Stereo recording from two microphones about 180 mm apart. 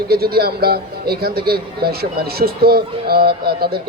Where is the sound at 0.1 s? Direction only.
60° right (ahead or behind).